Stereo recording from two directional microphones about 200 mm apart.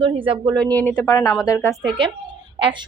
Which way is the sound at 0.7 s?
10° left (ahead or behind).